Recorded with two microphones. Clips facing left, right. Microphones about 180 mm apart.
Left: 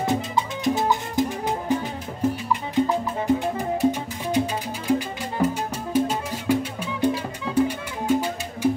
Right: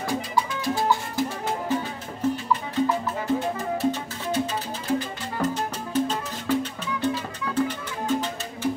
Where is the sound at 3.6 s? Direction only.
15° left (ahead or behind).